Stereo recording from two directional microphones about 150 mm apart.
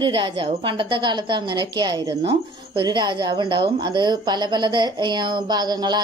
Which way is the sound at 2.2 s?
40° right (ahead or behind).